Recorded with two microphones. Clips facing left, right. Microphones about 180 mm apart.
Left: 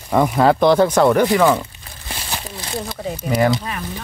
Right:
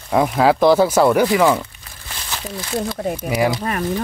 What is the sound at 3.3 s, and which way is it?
Speech, 5° right (ahead or behind).